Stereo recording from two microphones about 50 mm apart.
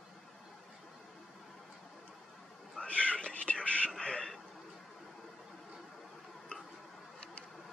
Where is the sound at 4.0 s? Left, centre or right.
Centre.